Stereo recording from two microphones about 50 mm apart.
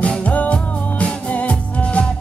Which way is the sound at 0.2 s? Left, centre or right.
Left.